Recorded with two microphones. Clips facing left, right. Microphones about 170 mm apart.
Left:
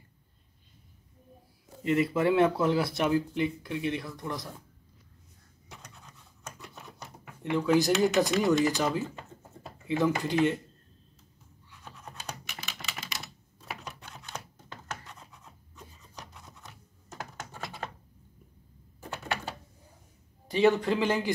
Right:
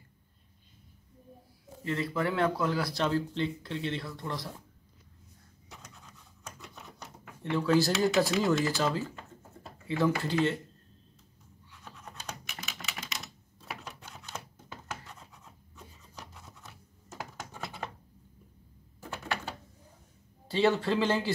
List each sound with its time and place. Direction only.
1.8 s a man's voice: 20° left (ahead or behind)
6.4 s typewriter: centre (ahead or behind)
7.4 s speech: 15° left (ahead or behind)
12.7 s typing: 5° left (ahead or behind)
20.4 s a man's voice: 15° left (ahead or behind)